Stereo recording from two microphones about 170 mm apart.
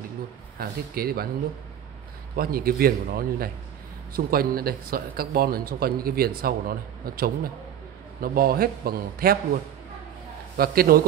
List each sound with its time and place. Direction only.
0.6 s speech: 60° right (ahead or behind)
2.3 s speech: 60° right (ahead or behind)
10.6 s speech: 60° right (ahead or behind)